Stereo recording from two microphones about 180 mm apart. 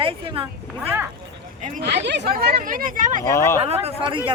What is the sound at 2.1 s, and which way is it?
Speech, 70° right (ahead or behind).